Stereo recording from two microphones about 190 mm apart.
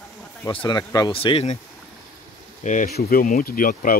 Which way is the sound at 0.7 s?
20° left (ahead or behind).